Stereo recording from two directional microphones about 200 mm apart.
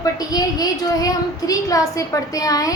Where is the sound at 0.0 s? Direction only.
20° left (ahead or behind).